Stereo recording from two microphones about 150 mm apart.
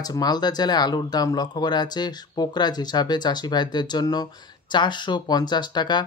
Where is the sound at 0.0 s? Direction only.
25° left (ahead or behind).